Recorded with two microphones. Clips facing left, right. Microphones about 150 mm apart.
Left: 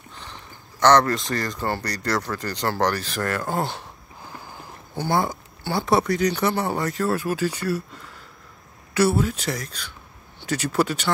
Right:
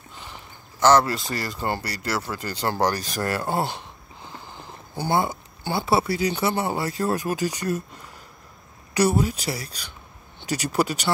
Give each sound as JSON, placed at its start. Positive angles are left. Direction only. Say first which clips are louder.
{"t": 0.2, "sound": "speech", "louder": "even", "side_deg": -5}
{"t": 1.9, "sound": "speech", "louder": "left 3 dB", "side_deg": -5}
{"t": 3.7, "sound": "wheeze", "louder": "left 1 dB", "side_deg": 5}
{"t": 4.9, "sound": "a sound", "louder": "even", "side_deg": -20}
{"t": 5.8, "sound": "speech", "louder": "left 2 dB", "side_deg": -5}